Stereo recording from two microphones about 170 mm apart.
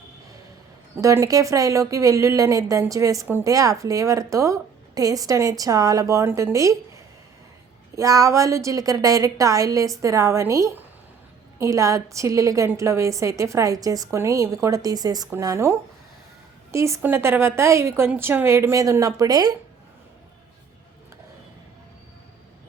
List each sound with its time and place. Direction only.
1.0 s a woman's voice: 20° right (ahead or behind)